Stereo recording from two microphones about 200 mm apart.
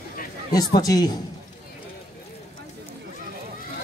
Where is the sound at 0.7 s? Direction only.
20° left (ahead or behind).